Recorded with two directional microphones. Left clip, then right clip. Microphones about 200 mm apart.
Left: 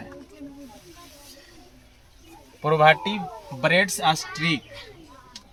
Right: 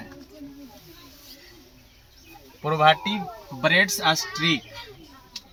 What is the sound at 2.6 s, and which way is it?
A man's voice, 45° left (ahead or behind).